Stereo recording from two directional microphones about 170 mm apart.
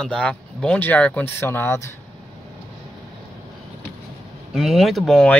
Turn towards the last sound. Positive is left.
turn(degrees=5)  # may be behind; listen again after turning